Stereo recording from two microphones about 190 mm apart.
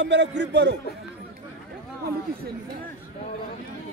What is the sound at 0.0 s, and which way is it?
Speech, 65° right (ahead or behind).